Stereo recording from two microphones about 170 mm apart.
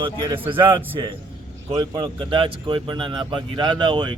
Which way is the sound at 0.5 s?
30° right (ahead or behind).